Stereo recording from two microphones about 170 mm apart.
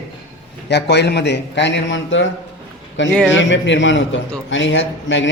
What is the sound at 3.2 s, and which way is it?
A man's voice, 90° left.